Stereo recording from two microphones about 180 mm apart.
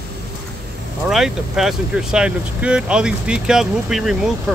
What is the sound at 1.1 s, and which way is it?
Speech, centre (ahead or behind).